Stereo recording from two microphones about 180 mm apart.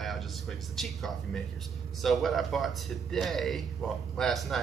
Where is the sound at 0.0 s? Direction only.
Centre (ahead or behind).